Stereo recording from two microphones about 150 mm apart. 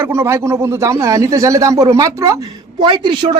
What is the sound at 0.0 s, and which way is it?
Speech, 15° right (ahead or behind).